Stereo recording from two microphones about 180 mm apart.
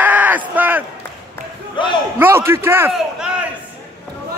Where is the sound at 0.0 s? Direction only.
10° right (ahead or behind).